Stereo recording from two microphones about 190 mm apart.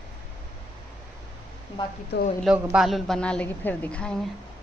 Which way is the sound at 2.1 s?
60° left (ahead or behind).